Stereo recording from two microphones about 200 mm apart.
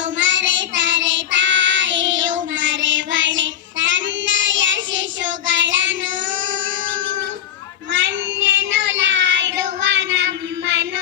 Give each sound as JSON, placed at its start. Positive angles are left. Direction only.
{"t": 0.2, "sound": "child singing", "side_deg": -70}
{"t": 7.9, "sound": "child singing", "side_deg": -65}